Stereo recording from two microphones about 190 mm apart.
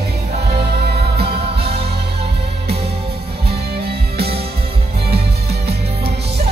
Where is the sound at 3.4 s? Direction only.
55° right (ahead or behind).